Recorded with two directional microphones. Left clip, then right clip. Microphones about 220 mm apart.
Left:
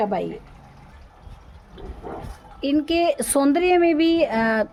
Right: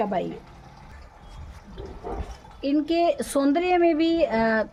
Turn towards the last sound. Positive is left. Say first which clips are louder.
# left 2 dB
turn(degrees=35)  # may be behind; listen again after turning